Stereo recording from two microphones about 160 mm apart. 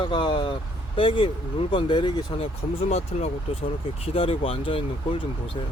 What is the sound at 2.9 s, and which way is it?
Speech, 40° left (ahead or behind).